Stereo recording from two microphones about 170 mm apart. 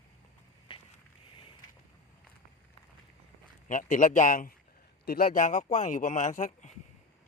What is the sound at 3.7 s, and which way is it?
Speech, 50° left (ahead or behind).